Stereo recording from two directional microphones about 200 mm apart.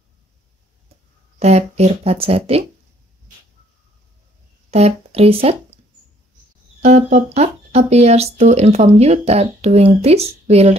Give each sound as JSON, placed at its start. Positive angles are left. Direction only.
{"t": 1.4, "sound": "speech", "side_deg": -35}
{"t": 4.6, "sound": "speech", "side_deg": -30}
{"t": 6.8, "sound": "speech", "side_deg": -35}